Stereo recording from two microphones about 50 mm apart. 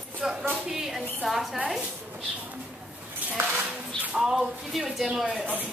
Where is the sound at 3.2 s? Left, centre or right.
Right.